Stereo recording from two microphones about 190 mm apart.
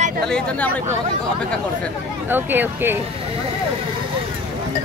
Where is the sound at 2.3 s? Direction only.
10° right (ahead or behind).